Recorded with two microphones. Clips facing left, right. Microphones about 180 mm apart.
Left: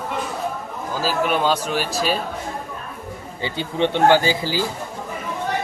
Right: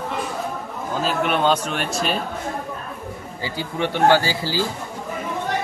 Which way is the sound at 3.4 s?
20° left (ahead or behind).